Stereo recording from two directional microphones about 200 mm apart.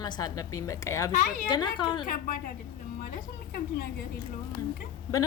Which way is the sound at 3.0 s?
45° left (ahead or behind).